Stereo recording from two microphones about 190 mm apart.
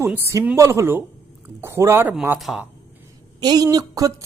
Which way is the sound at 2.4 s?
Centre (ahead or behind).